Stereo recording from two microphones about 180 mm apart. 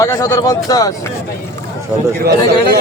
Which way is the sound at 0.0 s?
20° left (ahead or behind).